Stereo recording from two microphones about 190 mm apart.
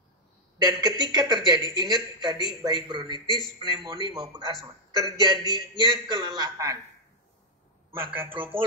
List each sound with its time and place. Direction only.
0.7 s a man's voice: 20° right (ahead or behind)
8.0 s a man's voice: 10° right (ahead or behind)